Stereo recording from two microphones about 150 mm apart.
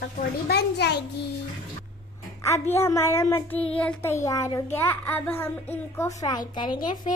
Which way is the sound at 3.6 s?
10° left (ahead or behind).